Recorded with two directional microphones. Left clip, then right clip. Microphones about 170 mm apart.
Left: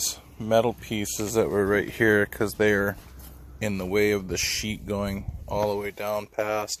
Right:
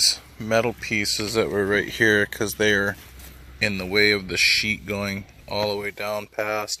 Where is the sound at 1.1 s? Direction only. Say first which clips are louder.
Left 4 dB; 5° left (ahead or behind).